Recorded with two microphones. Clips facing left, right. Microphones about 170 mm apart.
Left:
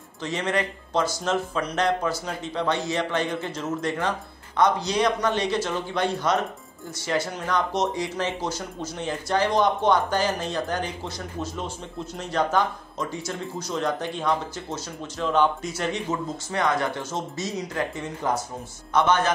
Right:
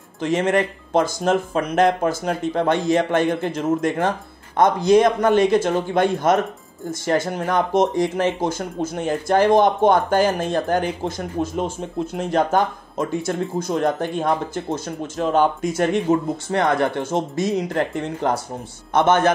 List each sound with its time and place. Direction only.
0.2 s speech: 50° right (ahead or behind)